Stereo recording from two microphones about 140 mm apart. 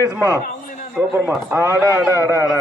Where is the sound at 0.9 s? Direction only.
10° right (ahead or behind).